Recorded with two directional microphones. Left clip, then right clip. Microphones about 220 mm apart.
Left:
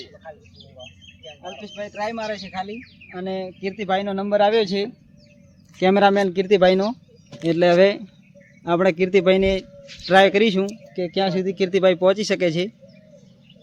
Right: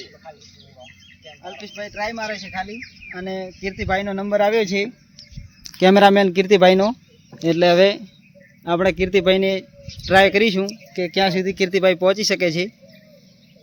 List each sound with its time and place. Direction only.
1.2 s speech: centre (ahead or behind); by 4.9 s 30° right (ahead or behind)
5.8 s speech: 45° right (ahead or behind)
7.3 s speech: 10° right (ahead or behind)